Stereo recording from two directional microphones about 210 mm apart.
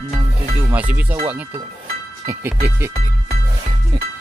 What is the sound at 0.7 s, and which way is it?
Speech, 5° right (ahead or behind).